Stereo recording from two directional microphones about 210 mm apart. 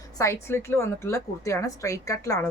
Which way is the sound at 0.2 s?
10° left (ahead or behind).